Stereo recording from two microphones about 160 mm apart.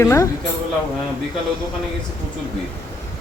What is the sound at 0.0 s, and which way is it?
Speech, 20° left (ahead or behind).